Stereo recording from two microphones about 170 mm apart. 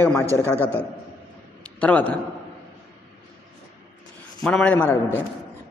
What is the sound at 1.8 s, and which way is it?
Speech, 10° left (ahead or behind).